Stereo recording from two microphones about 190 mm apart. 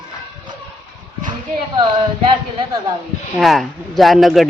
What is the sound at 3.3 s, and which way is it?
A man's voice, centre (ahead or behind).